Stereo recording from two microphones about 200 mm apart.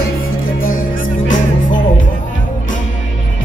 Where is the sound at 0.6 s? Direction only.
45° left (ahead or behind).